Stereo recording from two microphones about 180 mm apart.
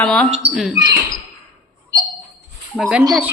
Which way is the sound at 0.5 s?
5° right (ahead or behind).